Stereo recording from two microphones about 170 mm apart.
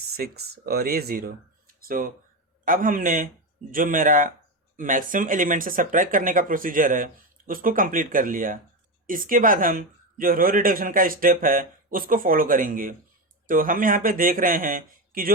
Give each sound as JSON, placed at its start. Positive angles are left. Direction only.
{"t": 0.2, "sound": "speech", "side_deg": -65}